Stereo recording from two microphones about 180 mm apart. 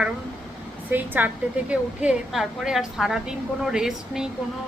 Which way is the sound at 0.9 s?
10° right (ahead or behind).